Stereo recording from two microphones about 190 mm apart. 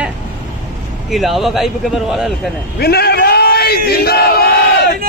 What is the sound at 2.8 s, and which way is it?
Battle cry, 55° left (ahead or behind).